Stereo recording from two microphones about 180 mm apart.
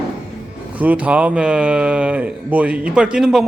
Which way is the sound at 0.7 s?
10° right (ahead or behind).